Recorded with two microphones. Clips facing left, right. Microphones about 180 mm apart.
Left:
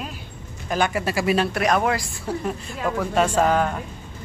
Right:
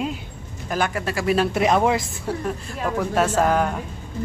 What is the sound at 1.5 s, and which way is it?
Speech, 25° right (ahead or behind).